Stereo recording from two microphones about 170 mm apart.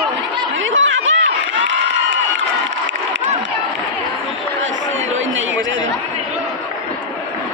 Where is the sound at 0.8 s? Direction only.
90° right.